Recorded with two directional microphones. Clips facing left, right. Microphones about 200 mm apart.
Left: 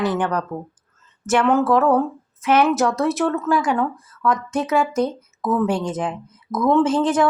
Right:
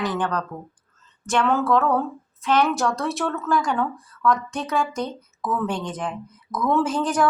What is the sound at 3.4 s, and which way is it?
Speech, 5° left (ahead or behind).